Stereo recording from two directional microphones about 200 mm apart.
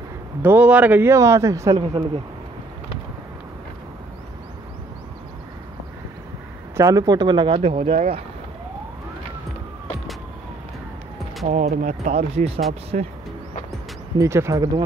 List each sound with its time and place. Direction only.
0.4 s a man's voice: 10° right (ahead or behind)
6.8 s speech: 15° right (ahead or behind)
11.5 s speech: 40° right (ahead or behind)
14.1 s a man's voice: 15° right (ahead or behind)